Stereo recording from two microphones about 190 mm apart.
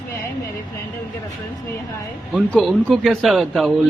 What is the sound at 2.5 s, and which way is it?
A man's voice, 5° left (ahead or behind).